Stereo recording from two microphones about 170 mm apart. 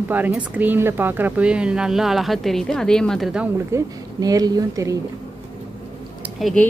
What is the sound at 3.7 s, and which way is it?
A woman's voice, 15° right (ahead or behind).